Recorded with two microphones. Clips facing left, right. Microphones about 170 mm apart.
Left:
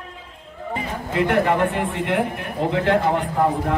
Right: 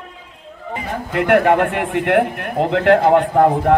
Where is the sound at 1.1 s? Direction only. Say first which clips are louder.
Right 5 dB; 65° right (ahead or behind).